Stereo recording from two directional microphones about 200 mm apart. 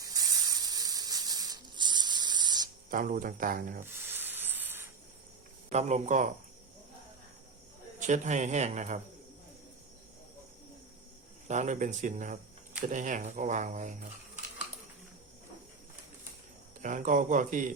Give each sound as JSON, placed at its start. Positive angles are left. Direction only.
{"t": 0.0, "sound": "rub", "side_deg": -20}
{"t": 2.9, "sound": "speech", "side_deg": -45}
{"t": 3.9, "sound": "rub", "side_deg": -10}
{"t": 5.6, "sound": "a man's voice", "side_deg": -35}
{"t": 7.9, "sound": "a man's voice", "side_deg": -40}
{"t": 11.4, "sound": "a man's voice", "side_deg": -35}
{"t": 16.8, "sound": "a man's voice", "side_deg": -40}